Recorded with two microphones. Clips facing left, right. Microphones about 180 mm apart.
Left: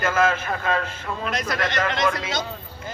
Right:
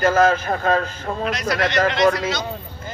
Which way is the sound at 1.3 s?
50° left (ahead or behind).